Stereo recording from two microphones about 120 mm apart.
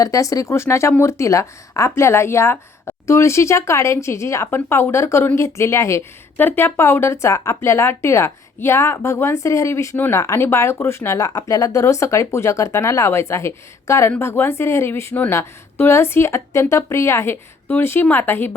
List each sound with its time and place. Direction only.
0.0 s speech: 30° left (ahead or behind)